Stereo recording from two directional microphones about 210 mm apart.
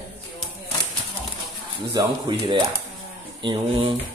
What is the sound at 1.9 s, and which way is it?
A man's voice, 20° right (ahead or behind).